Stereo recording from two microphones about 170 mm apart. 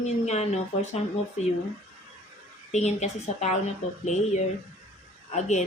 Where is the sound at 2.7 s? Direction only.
45° left (ahead or behind).